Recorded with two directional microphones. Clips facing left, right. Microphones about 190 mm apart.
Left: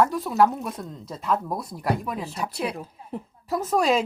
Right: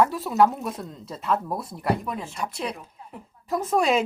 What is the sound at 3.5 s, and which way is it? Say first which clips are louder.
Speech: even; centre (ahead or behind).